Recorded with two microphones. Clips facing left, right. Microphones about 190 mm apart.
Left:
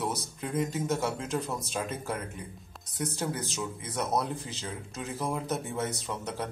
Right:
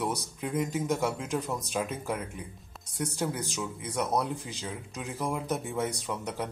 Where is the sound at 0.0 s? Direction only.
10° right (ahead or behind).